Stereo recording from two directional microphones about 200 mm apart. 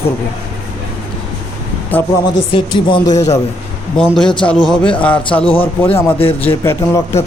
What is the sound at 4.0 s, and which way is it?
Speech, 5° left (ahead or behind).